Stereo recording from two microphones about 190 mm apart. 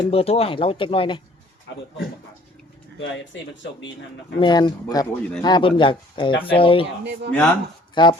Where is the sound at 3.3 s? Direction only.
75° left (ahead or behind).